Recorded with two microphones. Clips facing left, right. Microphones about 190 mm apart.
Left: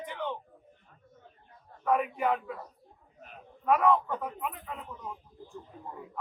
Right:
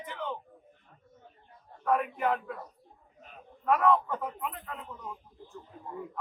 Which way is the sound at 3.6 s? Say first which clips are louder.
Even; centre (ahead or behind).